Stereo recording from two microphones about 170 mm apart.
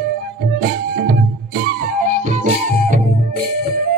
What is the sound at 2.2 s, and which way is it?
Music, 45° right (ahead or behind).